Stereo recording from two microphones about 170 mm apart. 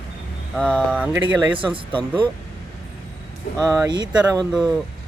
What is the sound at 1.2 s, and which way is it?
Speech, 25° right (ahead or behind).